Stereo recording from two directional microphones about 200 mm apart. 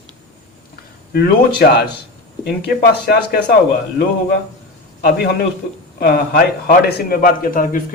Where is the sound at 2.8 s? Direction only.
55° left (ahead or behind).